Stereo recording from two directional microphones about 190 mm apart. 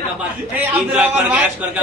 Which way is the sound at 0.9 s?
5° right (ahead or behind).